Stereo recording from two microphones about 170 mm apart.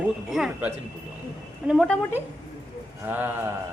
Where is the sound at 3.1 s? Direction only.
10° right (ahead or behind).